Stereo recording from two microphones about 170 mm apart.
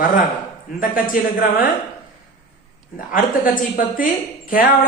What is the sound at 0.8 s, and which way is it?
Speech, 55° left (ahead or behind).